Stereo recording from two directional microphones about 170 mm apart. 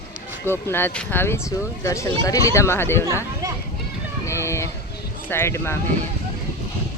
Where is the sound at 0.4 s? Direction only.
15° left (ahead or behind).